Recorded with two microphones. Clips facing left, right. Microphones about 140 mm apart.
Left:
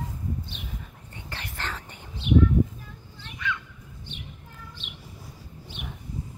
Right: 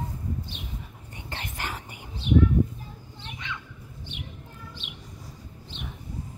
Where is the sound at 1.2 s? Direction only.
20° right (ahead or behind).